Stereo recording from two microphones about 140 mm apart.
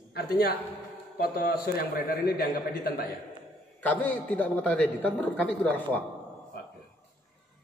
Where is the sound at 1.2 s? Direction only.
90° left.